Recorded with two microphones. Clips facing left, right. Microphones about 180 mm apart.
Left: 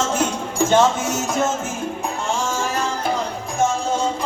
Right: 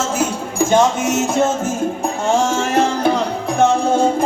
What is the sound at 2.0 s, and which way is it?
Music, 70° right (ahead or behind).